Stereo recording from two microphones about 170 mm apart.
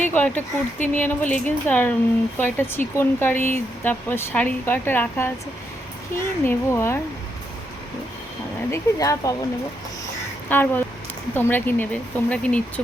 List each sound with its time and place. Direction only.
0.0 s speech: 10° left (ahead or behind)
8.7 s speech: 20° left (ahead or behind)
10.5 s speech: 10° left (ahead or behind)